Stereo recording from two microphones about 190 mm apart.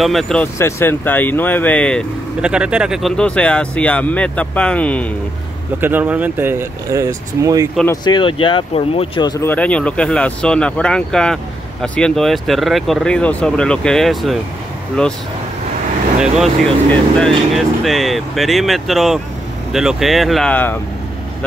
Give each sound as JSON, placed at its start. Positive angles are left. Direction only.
{"t": 0.0, "sound": "speech", "side_deg": 0}
{"t": 0.6, "sound": "speech", "side_deg": 15}
{"t": 2.4, "sound": "speech", "side_deg": -5}
{"t": 5.8, "sound": "speech", "side_deg": -10}
{"t": 7.9, "sound": "speech", "side_deg": 20}
{"t": 9.5, "sound": "speech", "side_deg": 5}
{"t": 16.2, "sound": "speech", "side_deg": 0}